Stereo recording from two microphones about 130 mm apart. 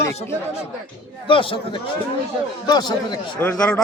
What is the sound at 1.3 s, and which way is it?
Speech, 45° left (ahead or behind).